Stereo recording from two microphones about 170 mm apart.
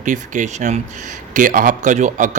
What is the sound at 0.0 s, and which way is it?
Speech, 45° right (ahead or behind).